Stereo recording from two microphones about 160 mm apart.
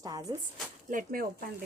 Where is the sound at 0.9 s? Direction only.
65° right (ahead or behind).